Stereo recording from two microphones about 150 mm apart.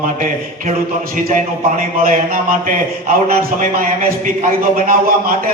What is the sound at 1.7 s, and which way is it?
A man's voice, 65° right (ahead or behind).